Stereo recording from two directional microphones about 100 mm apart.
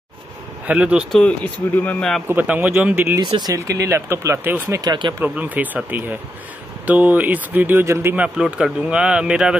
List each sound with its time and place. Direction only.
0.7 s a man's voice: 10° right (ahead or behind)
1.1 s speech: 15° left (ahead or behind)
2.2 s a man's voice: 15° right (ahead or behind)
3.5 s speech: 30° right (ahead or behind)
5.2 s a man's voice: 15° right (ahead or behind)
8.2 s a man's voice: 10° right (ahead or behind)